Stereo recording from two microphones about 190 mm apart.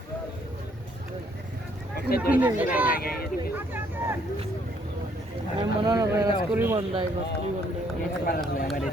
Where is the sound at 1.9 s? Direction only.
55° left (ahead or behind).